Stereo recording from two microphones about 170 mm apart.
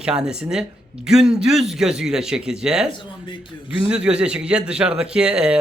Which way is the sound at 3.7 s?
5° right (ahead or behind).